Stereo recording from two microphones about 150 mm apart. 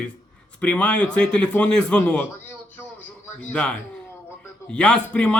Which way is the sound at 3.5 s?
10° left (ahead or behind).